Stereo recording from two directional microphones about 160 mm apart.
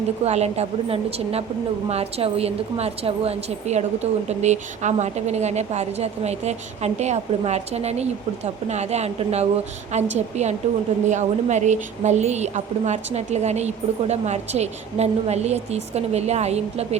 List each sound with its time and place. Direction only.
0.3 s a woman's voice: 40° right (ahead or behind)